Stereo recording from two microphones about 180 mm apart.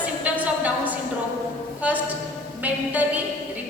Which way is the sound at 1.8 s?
10° right (ahead or behind).